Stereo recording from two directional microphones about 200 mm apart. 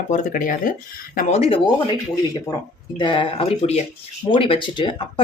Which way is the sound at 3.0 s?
25° left (ahead or behind).